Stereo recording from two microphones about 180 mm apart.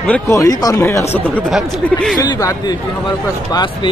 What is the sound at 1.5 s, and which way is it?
Speech, centre (ahead or behind).